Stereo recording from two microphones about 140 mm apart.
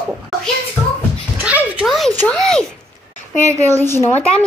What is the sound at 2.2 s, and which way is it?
Speech, 5° left (ahead or behind).